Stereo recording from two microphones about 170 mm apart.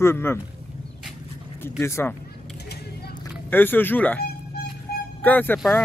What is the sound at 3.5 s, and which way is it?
A man's voice, 10° left (ahead or behind).